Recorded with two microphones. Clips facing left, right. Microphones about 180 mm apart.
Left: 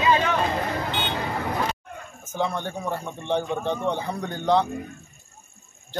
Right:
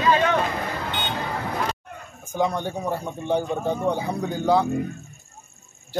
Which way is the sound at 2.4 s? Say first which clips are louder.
Right 3 dB; 10° right (ahead or behind).